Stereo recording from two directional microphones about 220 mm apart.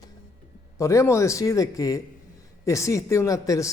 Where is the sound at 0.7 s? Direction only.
15° left (ahead or behind).